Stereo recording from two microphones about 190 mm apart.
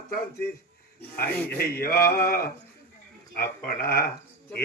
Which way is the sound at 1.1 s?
10° left (ahead or behind).